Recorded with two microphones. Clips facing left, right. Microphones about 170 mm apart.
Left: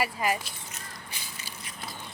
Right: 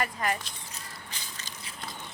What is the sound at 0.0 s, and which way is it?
Speech, 5° left (ahead or behind).